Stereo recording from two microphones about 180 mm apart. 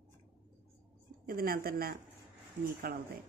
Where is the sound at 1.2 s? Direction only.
55° right (ahead or behind).